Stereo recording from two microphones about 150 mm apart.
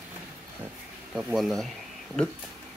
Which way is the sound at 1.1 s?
5° right (ahead or behind).